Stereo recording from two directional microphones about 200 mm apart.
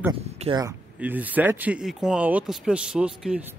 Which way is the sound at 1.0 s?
10° right (ahead or behind).